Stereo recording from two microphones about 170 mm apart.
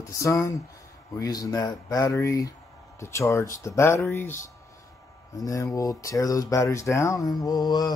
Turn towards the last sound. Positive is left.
turn(degrees=25)  # may be behind; listen again after turning